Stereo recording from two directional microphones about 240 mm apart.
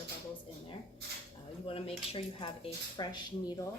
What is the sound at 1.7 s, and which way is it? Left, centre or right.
Speech, left.